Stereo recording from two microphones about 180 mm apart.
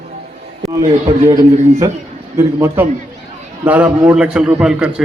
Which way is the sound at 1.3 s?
20° right (ahead or behind).